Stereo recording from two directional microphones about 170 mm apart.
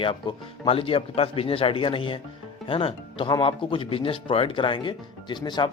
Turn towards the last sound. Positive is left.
turn(degrees=25)  # may be behind; listen again after turning